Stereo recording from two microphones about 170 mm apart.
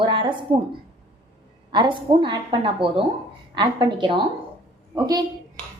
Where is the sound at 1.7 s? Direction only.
25° right (ahead or behind).